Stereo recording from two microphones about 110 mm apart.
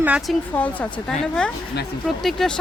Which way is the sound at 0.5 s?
15° left (ahead or behind).